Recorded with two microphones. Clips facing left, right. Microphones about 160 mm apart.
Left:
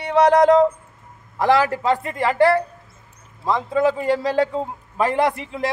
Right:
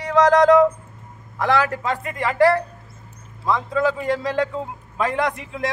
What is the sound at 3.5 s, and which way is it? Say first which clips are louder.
Speech: left 2 dB; 30° left (ahead or behind).